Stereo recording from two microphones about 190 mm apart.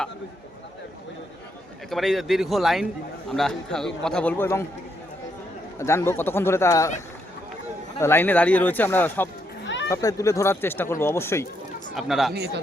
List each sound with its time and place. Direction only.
1.9 s a man's voice: centre (ahead or behind)
5.8 s speech: 15° left (ahead or behind)
7.9 s speech: 10° left (ahead or behind)
9.6 s chatter: 70° left (ahead or behind)
9.9 s speech: 15° left (ahead or behind)
11.9 s a man's voice: centre (ahead or behind)